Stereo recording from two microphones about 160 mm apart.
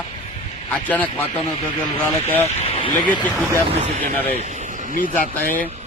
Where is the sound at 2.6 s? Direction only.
40° left (ahead or behind).